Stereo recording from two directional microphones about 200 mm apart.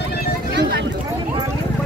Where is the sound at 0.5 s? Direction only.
65° right (ahead or behind).